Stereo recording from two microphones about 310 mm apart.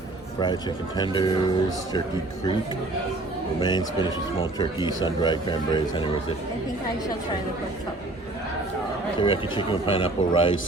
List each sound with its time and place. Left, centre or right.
0.3 s speech: centre
3.6 s speech: centre
9.2 s speech: centre